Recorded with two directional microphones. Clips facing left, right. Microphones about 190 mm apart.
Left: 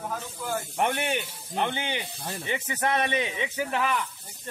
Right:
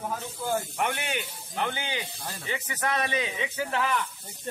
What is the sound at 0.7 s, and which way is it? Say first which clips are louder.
Speech: left 3 dB; 20° left (ahead or behind).